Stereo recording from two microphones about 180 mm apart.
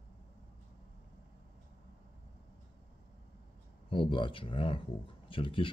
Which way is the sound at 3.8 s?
30° left (ahead or behind).